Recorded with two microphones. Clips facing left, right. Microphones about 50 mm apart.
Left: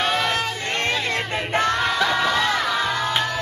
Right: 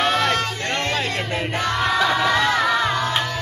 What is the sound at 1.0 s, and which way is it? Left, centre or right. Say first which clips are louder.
Music: even; left.